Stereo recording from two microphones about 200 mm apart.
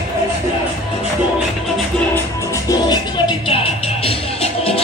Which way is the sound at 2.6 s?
20° left (ahead or behind).